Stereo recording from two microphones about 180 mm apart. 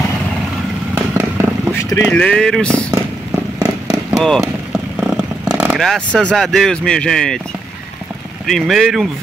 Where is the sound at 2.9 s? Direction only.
15° right (ahead or behind).